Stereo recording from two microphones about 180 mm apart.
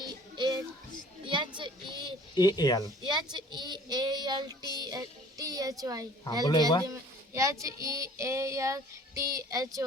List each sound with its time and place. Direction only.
0.0 s music: 25° right (ahead or behind)
1.3 s child singing: 25° right (ahead or behind)
2.3 s speech: 25° left (ahead or behind)
3.0 s a sound: 25° right (ahead or behind)
3.3 s child singing: 25° right (ahead or behind)
5.8 s a woman's voice: 20° right (ahead or behind)
6.4 s speech: 20° left (ahead or behind)
7.3 s child singing: 15° right (ahead or behind)